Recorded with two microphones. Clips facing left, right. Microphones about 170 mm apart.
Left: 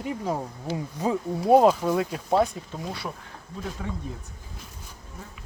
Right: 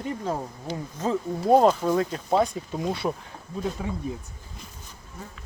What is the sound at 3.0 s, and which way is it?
Speech, 35° right (ahead or behind).